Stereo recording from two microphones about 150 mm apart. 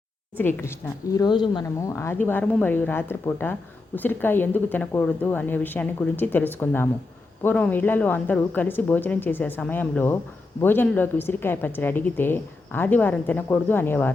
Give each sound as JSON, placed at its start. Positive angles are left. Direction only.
{"t": 0.3, "sound": "a woman's voice", "side_deg": 15}
{"t": 1.6, "sound": "a woman's voice", "side_deg": 20}